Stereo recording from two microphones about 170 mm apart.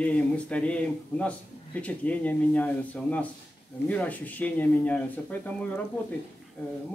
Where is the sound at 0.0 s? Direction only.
5° left (ahead or behind).